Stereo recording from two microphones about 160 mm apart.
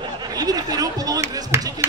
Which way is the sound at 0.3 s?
25° right (ahead or behind).